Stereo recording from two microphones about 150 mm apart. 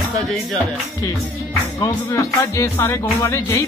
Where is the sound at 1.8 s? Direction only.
20° left (ahead or behind).